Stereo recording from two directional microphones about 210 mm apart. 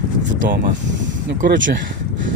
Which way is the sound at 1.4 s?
55° right (ahead or behind).